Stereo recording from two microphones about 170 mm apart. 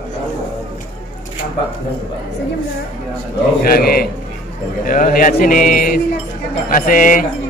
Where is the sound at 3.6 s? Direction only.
60° left (ahead or behind).